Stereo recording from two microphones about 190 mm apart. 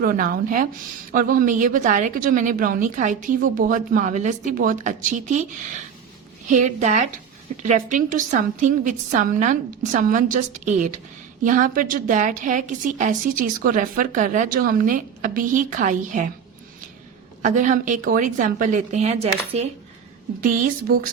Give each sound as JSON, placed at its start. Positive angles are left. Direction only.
{"t": 0.0, "sound": "a woman's voice", "side_deg": -50}
{"t": 6.5, "sound": "a woman's voice", "side_deg": -40}
{"t": 17.4, "sound": "a woman's voice", "side_deg": -40}
{"t": 20.4, "sound": "a woman's voice", "side_deg": -50}